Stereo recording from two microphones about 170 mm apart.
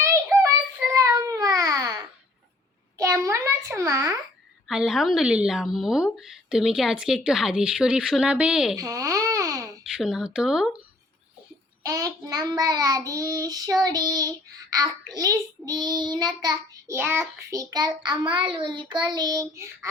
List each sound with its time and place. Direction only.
0.0 s child singing: 15° right (ahead or behind)
0.9 s baby cry: 20° right (ahead or behind)
3.0 s a sound: 15° right (ahead or behind)
4.7 s a woman's voice: 5° right (ahead or behind)
8.8 s babbling: 20° right (ahead or behind)
10.0 s a woman's voice: centre (ahead or behind)
11.8 s child singing: 20° right (ahead or behind)